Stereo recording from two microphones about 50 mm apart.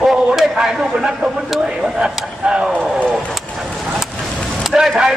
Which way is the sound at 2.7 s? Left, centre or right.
Right.